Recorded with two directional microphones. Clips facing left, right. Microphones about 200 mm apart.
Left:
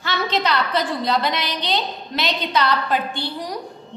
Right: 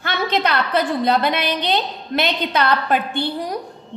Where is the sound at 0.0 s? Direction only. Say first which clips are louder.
Right 2 dB; 55° right (ahead or behind).